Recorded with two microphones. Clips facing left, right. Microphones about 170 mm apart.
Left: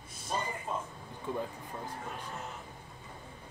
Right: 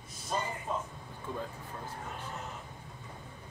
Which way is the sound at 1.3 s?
15° left (ahead or behind).